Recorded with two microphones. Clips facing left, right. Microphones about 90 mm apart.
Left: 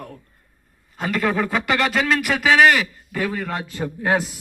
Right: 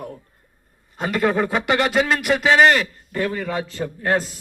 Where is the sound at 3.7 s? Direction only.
15° left (ahead or behind).